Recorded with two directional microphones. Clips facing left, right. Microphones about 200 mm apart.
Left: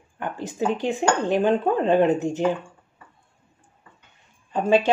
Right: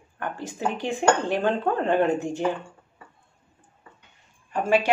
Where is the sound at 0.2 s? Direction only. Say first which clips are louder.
Left 3 dB; 20° left (ahead or behind).